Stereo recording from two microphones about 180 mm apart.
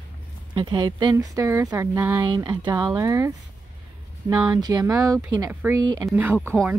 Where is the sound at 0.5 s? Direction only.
25° right (ahead or behind).